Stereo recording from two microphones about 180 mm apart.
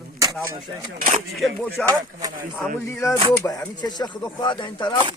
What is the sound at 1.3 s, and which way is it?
Speech, centre (ahead or behind).